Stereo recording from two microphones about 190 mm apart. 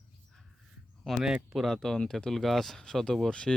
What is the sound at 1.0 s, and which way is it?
Speech, centre (ahead or behind).